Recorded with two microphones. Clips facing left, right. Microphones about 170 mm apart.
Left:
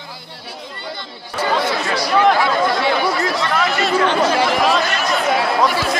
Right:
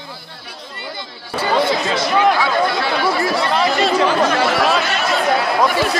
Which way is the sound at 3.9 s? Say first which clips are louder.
Right 1 dB; 5° right (ahead or behind).